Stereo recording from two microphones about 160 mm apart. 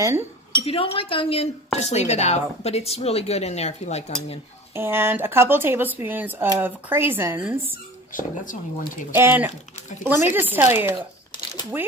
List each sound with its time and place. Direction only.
0.6 s speech: 35° left (ahead or behind)
4.7 s speech: 15° right (ahead or behind)
8.1 s speech: 55° left (ahead or behind)
9.1 s speech: 15° right (ahead or behind)